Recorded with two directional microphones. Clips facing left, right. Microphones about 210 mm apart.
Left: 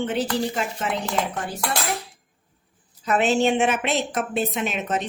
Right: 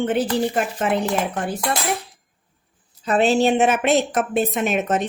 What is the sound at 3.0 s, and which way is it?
A woman's voice, 35° right (ahead or behind).